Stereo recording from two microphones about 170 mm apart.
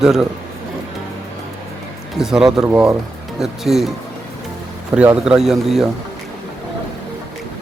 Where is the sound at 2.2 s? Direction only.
5° right (ahead or behind).